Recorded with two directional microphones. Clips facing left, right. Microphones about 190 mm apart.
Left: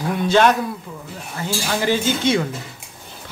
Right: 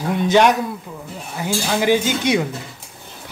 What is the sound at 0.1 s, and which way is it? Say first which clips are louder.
Speech: right 1 dB; 20° right (ahead or behind).